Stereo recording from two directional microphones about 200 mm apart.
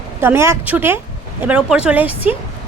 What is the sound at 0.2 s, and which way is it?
Speech, 10° right (ahead or behind).